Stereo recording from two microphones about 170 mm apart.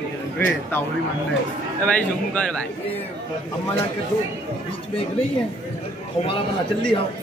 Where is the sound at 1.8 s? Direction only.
5° left (ahead or behind).